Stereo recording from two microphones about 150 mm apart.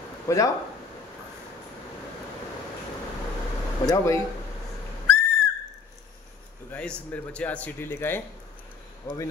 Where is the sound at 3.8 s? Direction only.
20° left (ahead or behind).